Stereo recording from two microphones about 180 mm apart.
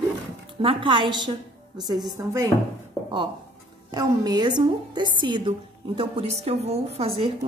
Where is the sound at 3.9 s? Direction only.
20° right (ahead or behind).